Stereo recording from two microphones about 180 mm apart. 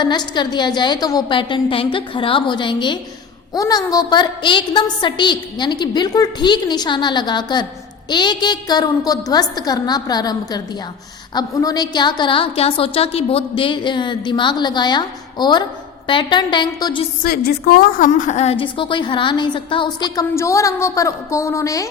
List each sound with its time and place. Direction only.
0.0 s a woman's voice: 25° left (ahead or behind)
17.2 s a woman's voice: 60° left (ahead or behind)
18.1 s a woman's voice: 40° left (ahead or behind); by 21.8 s 15° left (ahead or behind)